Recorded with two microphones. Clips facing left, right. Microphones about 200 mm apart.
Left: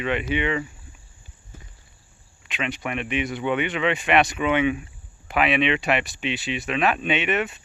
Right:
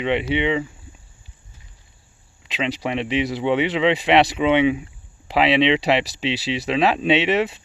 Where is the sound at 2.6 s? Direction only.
25° right (ahead or behind).